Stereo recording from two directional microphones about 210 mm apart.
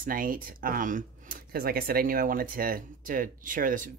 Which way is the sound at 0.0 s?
40° right (ahead or behind).